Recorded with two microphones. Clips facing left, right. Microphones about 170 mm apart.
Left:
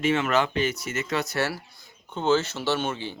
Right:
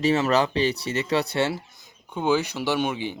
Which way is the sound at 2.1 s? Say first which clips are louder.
Even; 15° right (ahead or behind).